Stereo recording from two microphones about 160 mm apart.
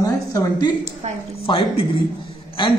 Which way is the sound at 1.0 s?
40° right (ahead or behind).